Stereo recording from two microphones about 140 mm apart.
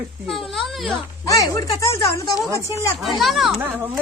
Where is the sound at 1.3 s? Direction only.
20° left (ahead or behind).